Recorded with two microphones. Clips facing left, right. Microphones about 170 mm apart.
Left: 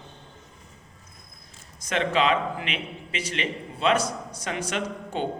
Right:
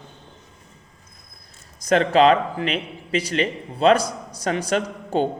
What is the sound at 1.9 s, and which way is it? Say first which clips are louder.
A man's voice: right 8 dB; 40° right (ahead or behind).